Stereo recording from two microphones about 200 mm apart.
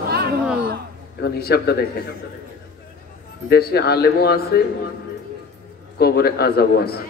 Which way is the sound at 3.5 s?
50° left (ahead or behind).